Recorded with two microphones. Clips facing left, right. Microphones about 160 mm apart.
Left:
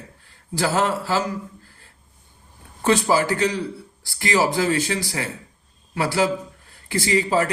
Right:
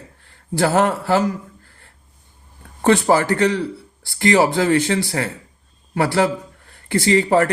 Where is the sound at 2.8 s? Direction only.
60° right (ahead or behind).